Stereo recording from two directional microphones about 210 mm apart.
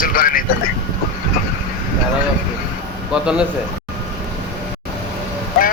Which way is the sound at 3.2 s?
5° right (ahead or behind).